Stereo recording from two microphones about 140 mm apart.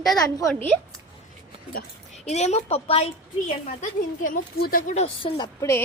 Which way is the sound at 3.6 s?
70° left (ahead or behind).